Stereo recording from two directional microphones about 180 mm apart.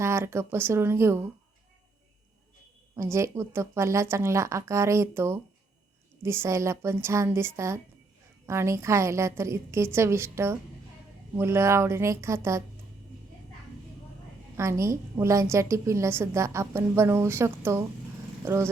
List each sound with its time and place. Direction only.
0.0 s a woman's voice: 15° right (ahead or behind)
2.9 s a woman's voice: 15° right (ahead or behind)
14.5 s a woman's voice: 15° right (ahead or behind)